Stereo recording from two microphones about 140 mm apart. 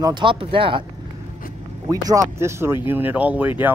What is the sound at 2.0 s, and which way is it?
Speech, 25° right (ahead or behind).